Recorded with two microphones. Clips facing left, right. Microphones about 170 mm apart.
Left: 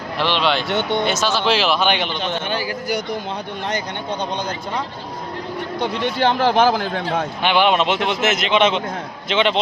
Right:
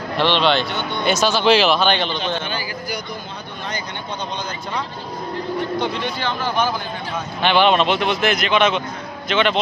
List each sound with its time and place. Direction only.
0.2 s speech: 5° left (ahead or behind)
1.8 s speech: 15° left (ahead or behind)
6.1 s speech: 80° left
7.4 s speech: 10° left (ahead or behind)